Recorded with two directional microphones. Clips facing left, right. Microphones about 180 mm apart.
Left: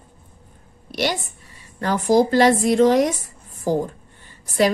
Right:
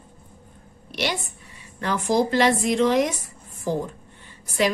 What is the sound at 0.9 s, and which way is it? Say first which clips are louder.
A woman's voice: left 4 dB; 45° left (ahead or behind).